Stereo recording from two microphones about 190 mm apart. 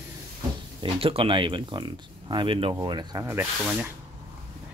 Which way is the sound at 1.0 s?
30° right (ahead or behind).